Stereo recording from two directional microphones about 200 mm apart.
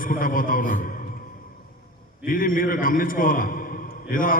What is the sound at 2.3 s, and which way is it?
A man's voice, 45° left (ahead or behind).